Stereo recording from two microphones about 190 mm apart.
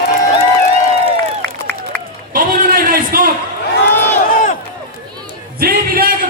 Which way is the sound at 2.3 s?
50° right (ahead or behind).